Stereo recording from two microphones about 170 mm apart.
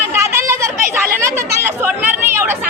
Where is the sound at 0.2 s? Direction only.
15° right (ahead or behind).